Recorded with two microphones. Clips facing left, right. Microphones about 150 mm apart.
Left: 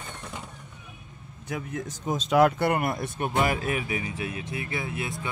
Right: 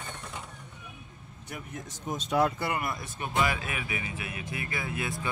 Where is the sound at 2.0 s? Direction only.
90° left.